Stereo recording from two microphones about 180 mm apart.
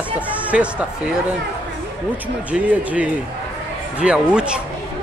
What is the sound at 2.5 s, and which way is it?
A man's voice, 5° right (ahead or behind).